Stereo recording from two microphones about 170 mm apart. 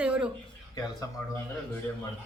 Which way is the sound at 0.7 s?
25° left (ahead or behind).